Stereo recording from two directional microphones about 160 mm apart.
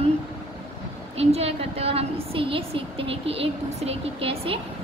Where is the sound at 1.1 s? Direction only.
40° right (ahead or behind).